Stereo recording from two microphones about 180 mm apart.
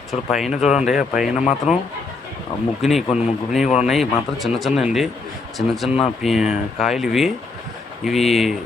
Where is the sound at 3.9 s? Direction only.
Centre (ahead or behind).